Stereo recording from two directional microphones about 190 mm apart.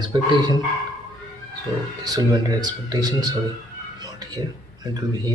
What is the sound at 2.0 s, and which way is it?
A man's voice, 20° right (ahead or behind).